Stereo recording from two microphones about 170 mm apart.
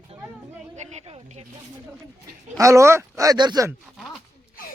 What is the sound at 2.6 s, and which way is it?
Speech, 15° right (ahead or behind).